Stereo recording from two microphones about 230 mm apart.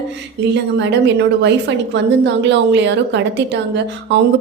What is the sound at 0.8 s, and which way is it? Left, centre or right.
A woman's voice, right.